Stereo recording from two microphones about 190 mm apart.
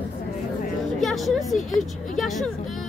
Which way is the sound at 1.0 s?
Centre (ahead or behind).